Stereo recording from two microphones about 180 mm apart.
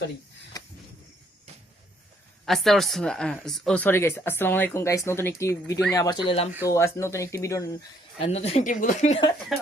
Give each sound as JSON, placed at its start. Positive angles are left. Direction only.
{"t": 0.5, "sound": "a sound", "side_deg": 20}
{"t": 2.5, "sound": "speech", "side_deg": 0}
{"t": 6.7, "sound": "speech", "side_deg": 15}
{"t": 8.2, "sound": "speech", "side_deg": 35}